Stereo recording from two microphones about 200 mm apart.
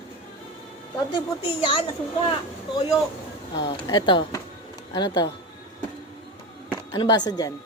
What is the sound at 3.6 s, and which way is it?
Speech, 20° left (ahead or behind).